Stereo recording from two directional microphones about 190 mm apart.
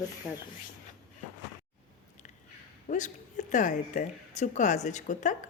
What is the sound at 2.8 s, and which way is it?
A woman's voice, 40° left (ahead or behind).